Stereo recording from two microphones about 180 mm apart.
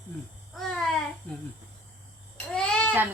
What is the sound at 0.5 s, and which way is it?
Babbling, centre (ahead or behind).